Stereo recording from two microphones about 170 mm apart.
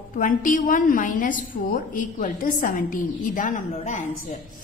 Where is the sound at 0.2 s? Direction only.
50° left (ahead or behind).